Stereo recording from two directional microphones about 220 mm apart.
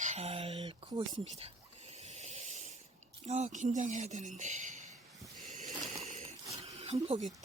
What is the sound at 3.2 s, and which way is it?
Speech, 30° right (ahead or behind).